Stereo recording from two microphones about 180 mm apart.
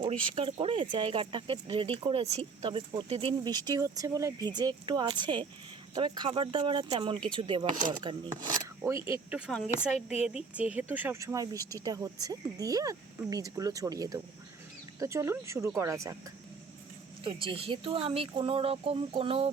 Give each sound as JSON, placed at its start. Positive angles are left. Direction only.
{"t": 0.3, "sound": "speech", "side_deg": -30}
{"t": 17.2, "sound": "speech", "side_deg": -30}